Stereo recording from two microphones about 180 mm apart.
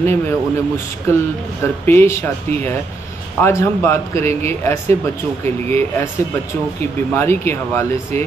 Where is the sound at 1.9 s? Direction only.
15° left (ahead or behind).